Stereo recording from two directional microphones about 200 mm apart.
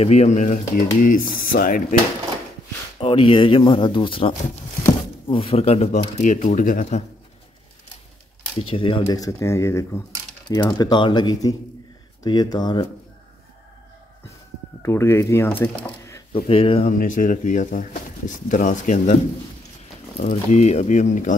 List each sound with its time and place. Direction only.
0.0 s speech: 35° left (ahead or behind)
3.0 s speech: 25° left (ahead or behind)
8.5 s speech: 25° left (ahead or behind)
14.8 s speech: 15° left (ahead or behind)
15.7 s speech: 25° left (ahead or behind)
16.9 s speech: 40° left (ahead or behind)
20.2 s speech: 35° left (ahead or behind)